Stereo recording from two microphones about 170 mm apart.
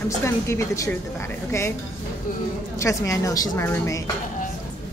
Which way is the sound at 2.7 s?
20° left (ahead or behind).